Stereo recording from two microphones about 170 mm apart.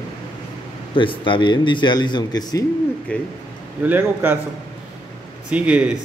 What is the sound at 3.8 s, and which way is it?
Speech, 10° right (ahead or behind).